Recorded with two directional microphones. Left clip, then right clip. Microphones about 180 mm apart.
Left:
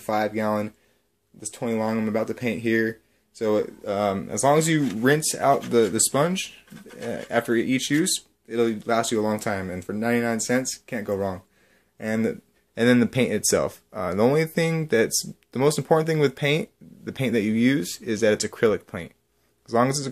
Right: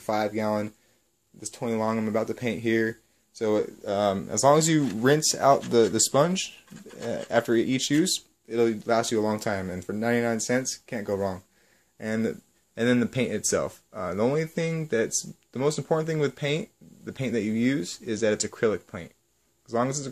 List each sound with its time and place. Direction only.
0.0 s speech: 10° right (ahead or behind); by 20.1 s 15° left (ahead or behind)